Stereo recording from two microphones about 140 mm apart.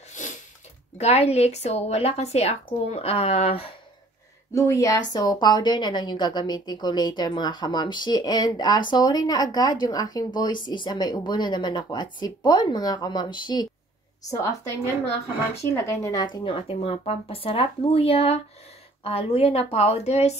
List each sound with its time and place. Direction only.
0.9 s speech: 50° left (ahead or behind)
4.5 s a woman's voice: 25° left (ahead or behind)
15.7 s speech: 20° left (ahead or behind)
16.4 s speech: 45° left (ahead or behind)